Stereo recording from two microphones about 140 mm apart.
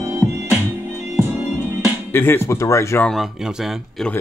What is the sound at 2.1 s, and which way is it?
Speech, 15° left (ahead or behind).